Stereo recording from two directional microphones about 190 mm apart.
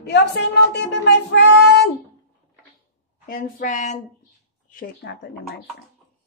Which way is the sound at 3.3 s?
45° left (ahead or behind).